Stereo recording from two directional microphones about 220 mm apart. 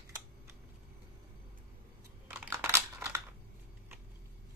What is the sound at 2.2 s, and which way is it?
Computer keyboard, 10° right (ahead or behind).